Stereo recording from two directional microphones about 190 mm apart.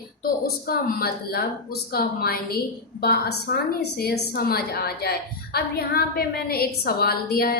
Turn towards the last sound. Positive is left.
turn(degrees=50)  # may be behind; listen again after turning